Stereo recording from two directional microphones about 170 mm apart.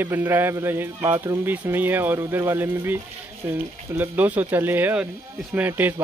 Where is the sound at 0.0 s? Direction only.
15° right (ahead or behind).